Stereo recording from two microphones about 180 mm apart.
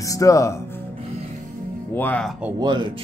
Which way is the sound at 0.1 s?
20° left (ahead or behind).